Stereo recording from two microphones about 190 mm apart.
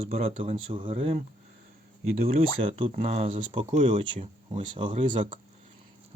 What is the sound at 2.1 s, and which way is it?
Speech, 50° right (ahead or behind).